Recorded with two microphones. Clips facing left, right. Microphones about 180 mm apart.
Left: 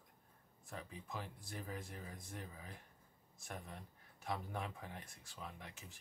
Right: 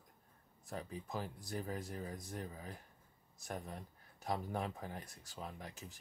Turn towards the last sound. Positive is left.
turn(degrees=-40)  # may be behind; listen again after turning